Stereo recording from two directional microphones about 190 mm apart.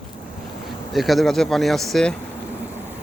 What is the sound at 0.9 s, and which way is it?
Speech, centre (ahead or behind).